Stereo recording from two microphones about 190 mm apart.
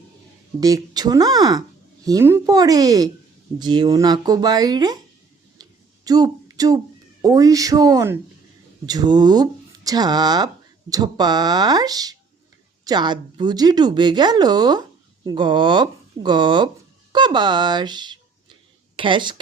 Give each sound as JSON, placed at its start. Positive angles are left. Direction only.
{"t": 0.6, "sound": "speech", "side_deg": -20}
{"t": 5.6, "sound": "a sound", "side_deg": -20}
{"t": 6.1, "sound": "speech", "side_deg": -20}